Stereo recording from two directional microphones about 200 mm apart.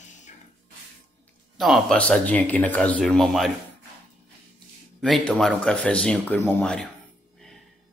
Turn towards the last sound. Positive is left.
turn(degrees=5)  # may be behind; listen again after turning